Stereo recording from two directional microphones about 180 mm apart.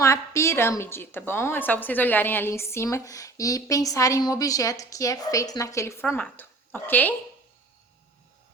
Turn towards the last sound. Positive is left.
turn(degrees=10)  # may be behind; listen again after turning